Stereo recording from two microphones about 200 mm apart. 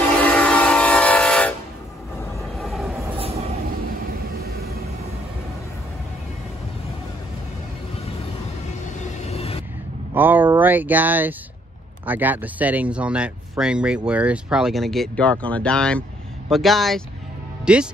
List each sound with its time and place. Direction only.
0.2 s train: 5° left (ahead or behind)
2.5 s train: centre (ahead or behind)
3.2 s train: 30° right (ahead or behind)
9.2 s a sound: 30° left (ahead or behind)
10.1 s a sound: 10° right (ahead or behind)
12.1 s speech: 10° right (ahead or behind)